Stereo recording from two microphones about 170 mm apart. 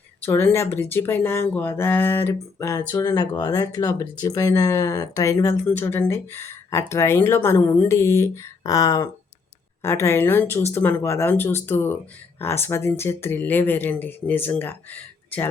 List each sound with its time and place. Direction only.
0.2 s speech: 15° left (ahead or behind)